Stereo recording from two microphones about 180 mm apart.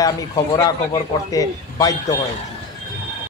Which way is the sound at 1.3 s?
20° left (ahead or behind).